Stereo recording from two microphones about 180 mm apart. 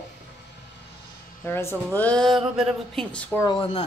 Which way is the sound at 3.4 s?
25° left (ahead or behind).